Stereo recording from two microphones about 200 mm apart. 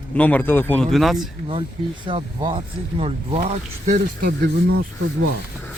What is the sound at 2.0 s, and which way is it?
Speech, 25° right (ahead or behind).